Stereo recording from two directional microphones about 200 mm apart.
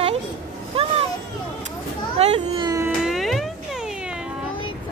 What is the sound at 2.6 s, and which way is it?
Cat, 15° right (ahead or behind).